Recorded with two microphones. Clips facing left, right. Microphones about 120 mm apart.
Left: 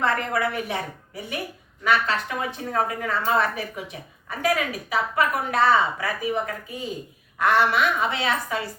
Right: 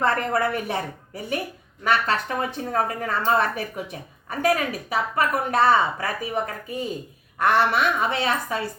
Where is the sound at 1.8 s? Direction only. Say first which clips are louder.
Even; 45° right (ahead or behind).